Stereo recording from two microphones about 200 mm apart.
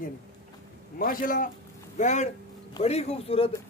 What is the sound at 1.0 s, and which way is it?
A man's voice, 45° left (ahead or behind).